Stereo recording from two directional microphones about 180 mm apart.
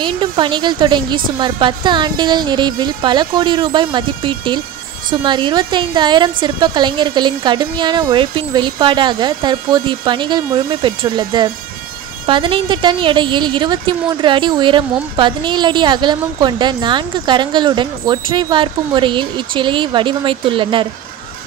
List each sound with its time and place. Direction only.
0.0 s a woman's voice: 25° right (ahead or behind)